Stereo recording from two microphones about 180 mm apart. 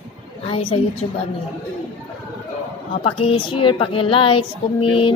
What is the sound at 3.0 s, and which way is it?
Mantra, 30° left (ahead or behind).